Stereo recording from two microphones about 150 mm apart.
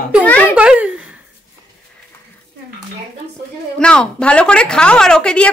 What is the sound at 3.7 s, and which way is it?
A woman's voice, 5° left (ahead or behind).